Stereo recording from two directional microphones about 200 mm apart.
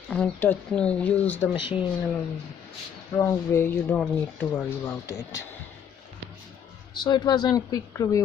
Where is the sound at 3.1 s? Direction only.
10° left (ahead or behind).